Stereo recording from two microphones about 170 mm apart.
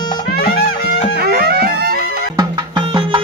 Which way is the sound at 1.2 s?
65° right (ahead or behind).